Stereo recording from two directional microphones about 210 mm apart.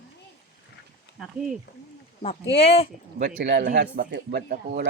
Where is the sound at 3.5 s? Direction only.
50° right (ahead or behind).